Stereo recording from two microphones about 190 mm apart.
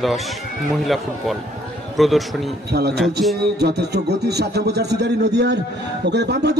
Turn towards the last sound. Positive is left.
turn(degrees=-60)  # may be behind; listen again after turning